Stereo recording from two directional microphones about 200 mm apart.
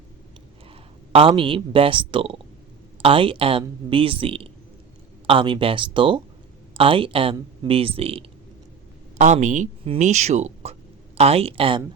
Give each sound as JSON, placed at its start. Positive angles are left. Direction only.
{"t": 1.1, "sound": "speech", "side_deg": -25}